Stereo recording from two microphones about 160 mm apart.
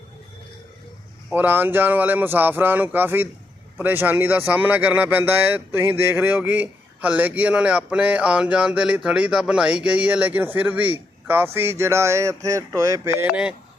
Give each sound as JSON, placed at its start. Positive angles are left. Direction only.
{"t": 1.3, "sound": "speech", "side_deg": -10}